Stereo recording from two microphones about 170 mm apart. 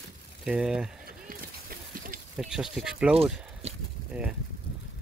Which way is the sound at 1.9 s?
55° right (ahead or behind).